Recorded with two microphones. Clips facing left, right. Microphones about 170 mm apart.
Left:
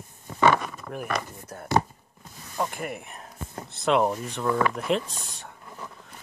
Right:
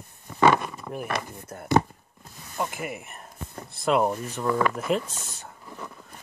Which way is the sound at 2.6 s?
5° right (ahead or behind).